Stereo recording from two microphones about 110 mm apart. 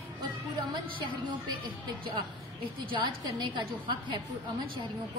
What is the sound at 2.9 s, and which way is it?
A woman's voice, 45° right (ahead or behind).